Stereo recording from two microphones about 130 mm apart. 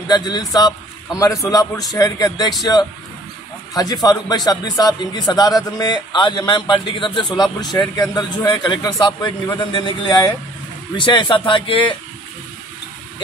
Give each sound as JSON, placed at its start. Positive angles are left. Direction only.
{"t": 0.1, "sound": "a man's voice", "side_deg": 30}
{"t": 8.0, "sound": "speech", "side_deg": 25}